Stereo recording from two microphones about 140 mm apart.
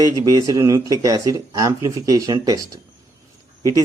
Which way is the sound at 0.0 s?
25° right (ahead or behind).